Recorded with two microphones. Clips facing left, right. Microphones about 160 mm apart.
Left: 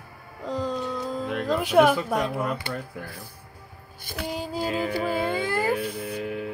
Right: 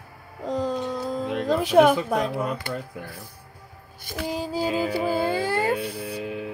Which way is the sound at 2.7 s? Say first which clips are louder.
Right 1 dB; 20° right (ahead or behind).